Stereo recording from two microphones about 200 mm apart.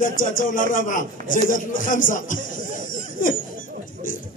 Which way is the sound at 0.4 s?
40° left (ahead or behind).